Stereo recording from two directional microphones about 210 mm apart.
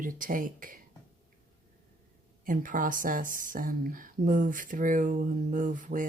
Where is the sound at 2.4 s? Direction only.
40° right (ahead or behind).